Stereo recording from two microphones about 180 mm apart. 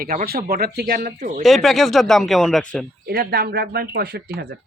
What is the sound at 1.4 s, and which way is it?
Speech, centre (ahead or behind).